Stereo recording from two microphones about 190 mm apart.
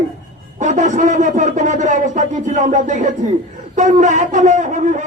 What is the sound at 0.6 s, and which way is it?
A man's voice, 40° right (ahead or behind).